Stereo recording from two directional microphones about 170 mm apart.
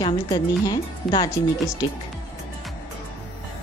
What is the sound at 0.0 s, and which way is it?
Speech, 25° left (ahead or behind).